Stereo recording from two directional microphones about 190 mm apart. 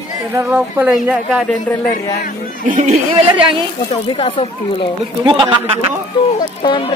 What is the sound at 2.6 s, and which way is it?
Speech, 40° right (ahead or behind).